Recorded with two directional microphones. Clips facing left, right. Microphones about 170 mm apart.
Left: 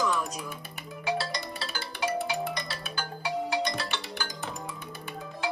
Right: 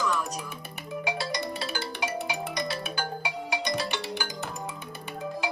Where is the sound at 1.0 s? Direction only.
15° right (ahead or behind).